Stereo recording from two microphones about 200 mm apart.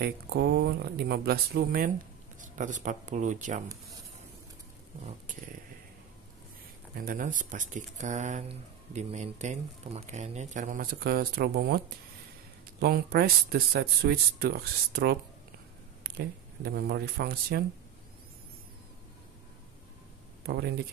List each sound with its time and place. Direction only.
0.0 s speech: 55° right (ahead or behind); by 3.6 s 40° right (ahead or behind)
5.0 s speech: 40° right (ahead or behind)
7.0 s speech: 45° right (ahead or behind)
12.8 s speech: 50° right (ahead or behind)
16.6 s speech: 50° right (ahead or behind)
20.4 s speech: 55° right (ahead or behind)